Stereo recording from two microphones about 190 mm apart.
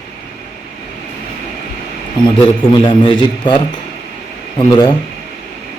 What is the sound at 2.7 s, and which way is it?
A man's voice, 25° left (ahead or behind).